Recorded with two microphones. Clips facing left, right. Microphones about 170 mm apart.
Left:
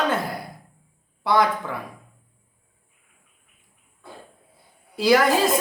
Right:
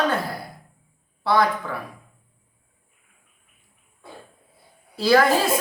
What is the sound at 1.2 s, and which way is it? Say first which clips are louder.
Speech: even; 20° left (ahead or behind).